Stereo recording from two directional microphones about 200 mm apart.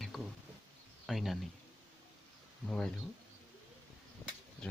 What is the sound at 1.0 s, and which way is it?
Speech, centre (ahead or behind).